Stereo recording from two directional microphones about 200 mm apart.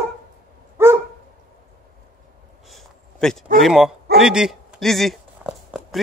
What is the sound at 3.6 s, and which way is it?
Speech, centre (ahead or behind).